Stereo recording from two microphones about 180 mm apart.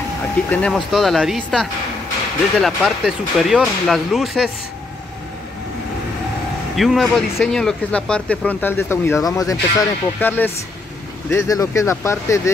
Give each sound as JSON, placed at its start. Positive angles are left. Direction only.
{"t": 0.5, "sound": "speech", "side_deg": 5}
{"t": 6.7, "sound": "speech", "side_deg": 0}